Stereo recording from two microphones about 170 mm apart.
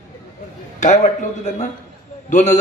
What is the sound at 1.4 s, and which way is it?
A man's voice, 45° left (ahead or behind).